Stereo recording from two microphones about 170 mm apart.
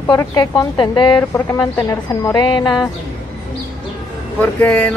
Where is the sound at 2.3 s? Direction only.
25° left (ahead or behind).